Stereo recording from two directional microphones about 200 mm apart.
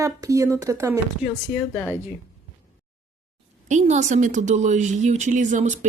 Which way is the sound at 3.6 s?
35° right (ahead or behind).